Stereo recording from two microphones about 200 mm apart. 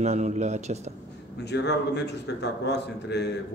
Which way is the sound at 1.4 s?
55° left (ahead or behind).